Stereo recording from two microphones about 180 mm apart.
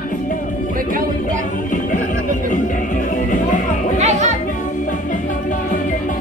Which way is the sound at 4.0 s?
40° right (ahead or behind).